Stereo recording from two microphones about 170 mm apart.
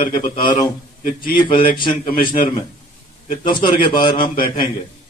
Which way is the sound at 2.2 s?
30° left (ahead or behind).